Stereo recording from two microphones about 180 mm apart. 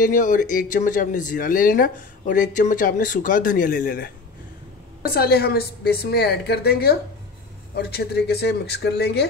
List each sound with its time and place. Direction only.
0.0 s a woman's voice: 45° left (ahead or behind); by 9.3 s 65° left (ahead or behind)